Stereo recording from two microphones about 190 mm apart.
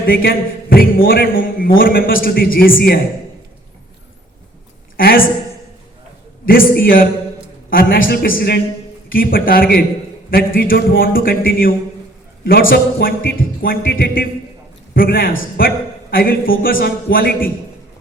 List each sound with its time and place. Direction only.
0.0 s a man's voice: 50° left (ahead or behind)
4.9 s a man's voice: 50° left (ahead or behind)
6.4 s a man's voice: 50° left (ahead or behind)
7.7 s a man's voice: 50° left (ahead or behind)